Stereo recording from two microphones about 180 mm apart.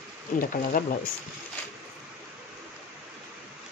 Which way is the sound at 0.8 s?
50° left (ahead or behind).